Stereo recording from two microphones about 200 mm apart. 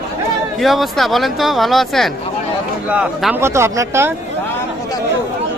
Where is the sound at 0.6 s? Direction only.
Centre (ahead or behind).